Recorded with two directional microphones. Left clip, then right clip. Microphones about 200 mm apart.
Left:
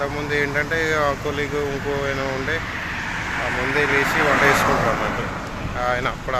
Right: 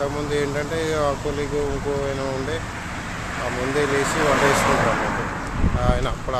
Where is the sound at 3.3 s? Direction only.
60° right (ahead or behind).